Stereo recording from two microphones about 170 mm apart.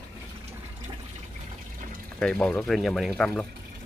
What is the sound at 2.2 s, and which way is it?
Speech, 5° left (ahead or behind).